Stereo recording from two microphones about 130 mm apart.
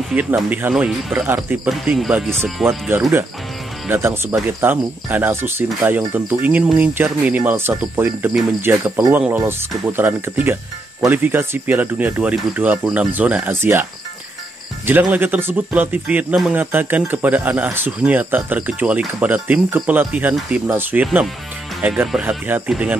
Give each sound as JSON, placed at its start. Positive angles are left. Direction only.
{"t": 0.1, "sound": "speech", "side_deg": -10}
{"t": 2.2, "sound": "speech", "side_deg": 5}
{"t": 2.9, "sound": "speech", "side_deg": -20}
{"t": 14.9, "sound": "speech", "side_deg": -15}